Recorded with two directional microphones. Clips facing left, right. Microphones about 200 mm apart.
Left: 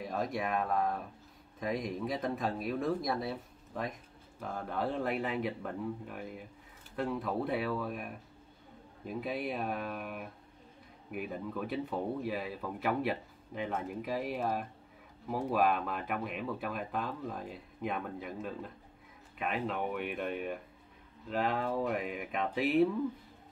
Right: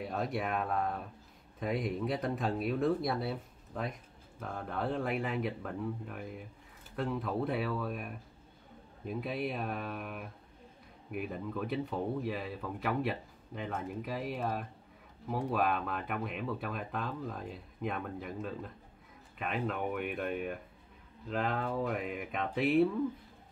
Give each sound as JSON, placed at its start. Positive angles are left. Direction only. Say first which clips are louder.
{"t": 0.0, "sound": "speech", "louder": "even", "side_deg": -5}